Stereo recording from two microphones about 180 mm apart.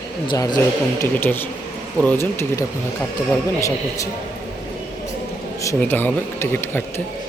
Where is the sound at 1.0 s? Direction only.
10° left (ahead or behind).